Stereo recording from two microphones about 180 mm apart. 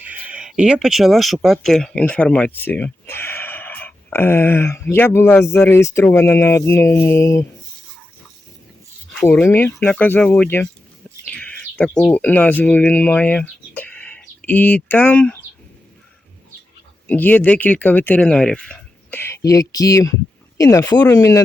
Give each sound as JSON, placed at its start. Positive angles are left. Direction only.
{"t": 0.0, "sound": "speech", "side_deg": -10}
{"t": 9.1, "sound": "speech", "side_deg": 10}
{"t": 17.1, "sound": "speech", "side_deg": 10}